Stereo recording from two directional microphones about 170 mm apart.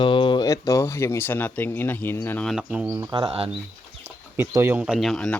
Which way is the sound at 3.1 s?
30° right (ahead or behind).